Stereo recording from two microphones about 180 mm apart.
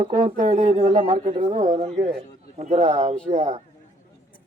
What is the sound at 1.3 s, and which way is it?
Speech, 30° right (ahead or behind).